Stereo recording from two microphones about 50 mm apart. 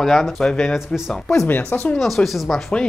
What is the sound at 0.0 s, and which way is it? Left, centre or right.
Speech, centre.